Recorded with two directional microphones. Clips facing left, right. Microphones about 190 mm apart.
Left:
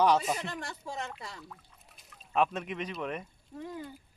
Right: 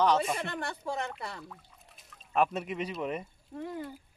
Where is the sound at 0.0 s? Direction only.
10° left (ahead or behind).